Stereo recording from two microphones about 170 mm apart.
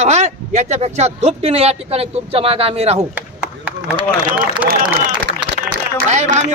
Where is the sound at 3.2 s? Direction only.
10° right (ahead or behind).